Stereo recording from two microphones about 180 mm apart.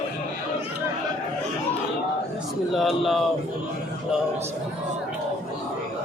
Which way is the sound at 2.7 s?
Centre (ahead or behind).